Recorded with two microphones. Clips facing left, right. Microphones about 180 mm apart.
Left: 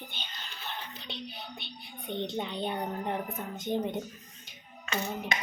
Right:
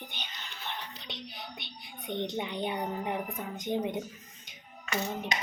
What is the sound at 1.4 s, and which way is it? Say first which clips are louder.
A woman's voice: left 1 dB; 20° right (ahead or behind).